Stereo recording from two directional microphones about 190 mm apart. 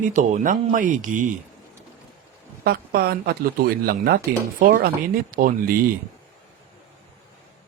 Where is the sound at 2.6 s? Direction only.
55° right (ahead or behind).